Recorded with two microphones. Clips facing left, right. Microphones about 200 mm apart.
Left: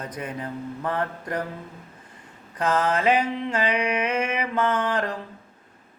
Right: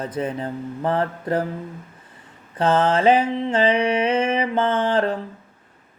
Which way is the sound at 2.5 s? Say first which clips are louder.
Right 5 dB; 30° right (ahead or behind).